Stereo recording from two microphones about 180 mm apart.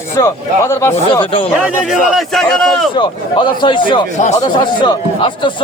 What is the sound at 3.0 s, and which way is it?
Speech, 25° left (ahead or behind).